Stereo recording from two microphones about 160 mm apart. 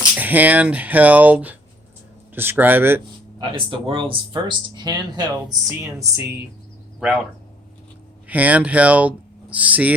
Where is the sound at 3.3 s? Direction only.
35° right (ahead or behind).